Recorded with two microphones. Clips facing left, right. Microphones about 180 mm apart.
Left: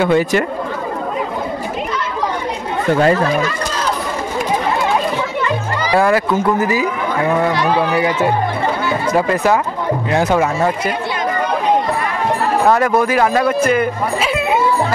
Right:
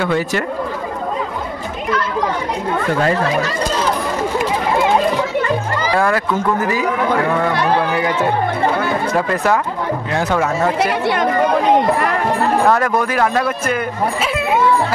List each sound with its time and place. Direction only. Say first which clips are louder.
0.0 s speech: left 4 dB; 15° left (ahead or behind)
5.9 s speech: left 3 dB; 10° left (ahead or behind)
10.8 s speech: right 4 dB; 70° right (ahead or behind)
12.6 s speech: left 2 dB; 5° left (ahead or behind)